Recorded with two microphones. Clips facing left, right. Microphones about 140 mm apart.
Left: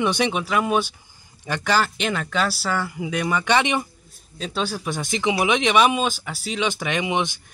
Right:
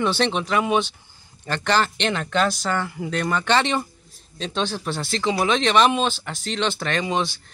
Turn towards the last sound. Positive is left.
turn(degrees=15)  # may be behind; listen again after turning